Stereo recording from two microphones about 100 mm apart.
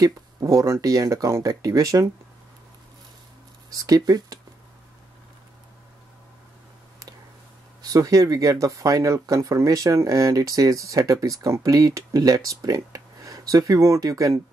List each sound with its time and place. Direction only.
0.0 s speech: 35° right (ahead or behind)
3.7 s speech: 35° right (ahead or behind)
7.8 s speech: 35° right (ahead or behind)